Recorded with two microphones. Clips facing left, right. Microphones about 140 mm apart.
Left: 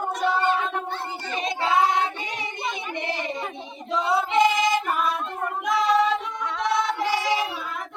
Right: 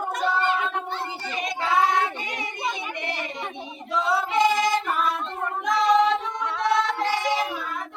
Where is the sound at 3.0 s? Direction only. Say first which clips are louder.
Left 2 dB; 25° left (ahead or behind).